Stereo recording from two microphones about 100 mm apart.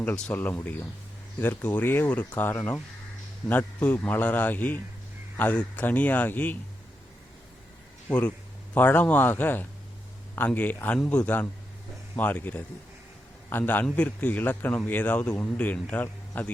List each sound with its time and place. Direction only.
0.0 s a man's voice: 15° left (ahead or behind)
8.0 s a man's voice: 10° left (ahead or behind)
10.9 s a man's voice: 5° left (ahead or behind)